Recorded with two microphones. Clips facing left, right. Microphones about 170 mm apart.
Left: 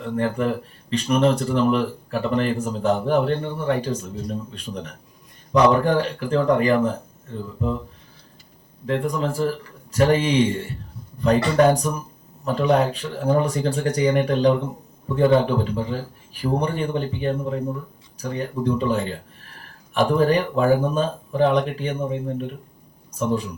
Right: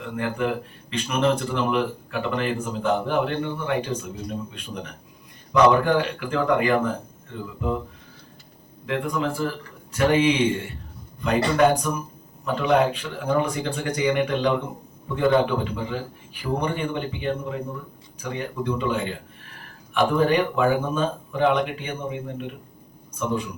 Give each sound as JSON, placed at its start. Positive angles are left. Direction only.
{"t": 0.0, "sound": "speech", "side_deg": 40}
{"t": 5.5, "sound": "speech", "side_deg": 40}
{"t": 8.9, "sound": "speech", "side_deg": 40}